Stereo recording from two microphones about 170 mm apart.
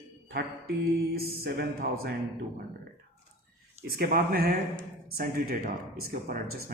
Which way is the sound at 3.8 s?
60° right (ahead or behind).